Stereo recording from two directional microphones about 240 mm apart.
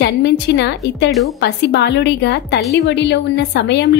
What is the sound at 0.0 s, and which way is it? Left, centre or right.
A woman's voice, left.